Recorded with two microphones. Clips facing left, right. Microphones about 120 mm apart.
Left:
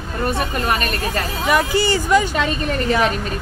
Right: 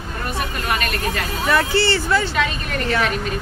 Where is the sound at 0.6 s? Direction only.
40° left (ahead or behind).